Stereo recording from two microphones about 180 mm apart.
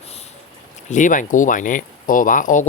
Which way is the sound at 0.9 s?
45° left (ahead or behind).